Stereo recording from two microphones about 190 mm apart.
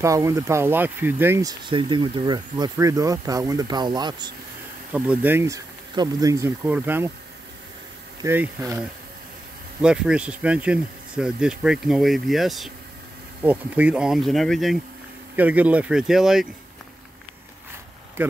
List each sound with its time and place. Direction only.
0.0 s speech: 15° right (ahead or behind)
4.9 s speech: 5° right (ahead or behind)
8.2 s speech: 15° right (ahead or behind)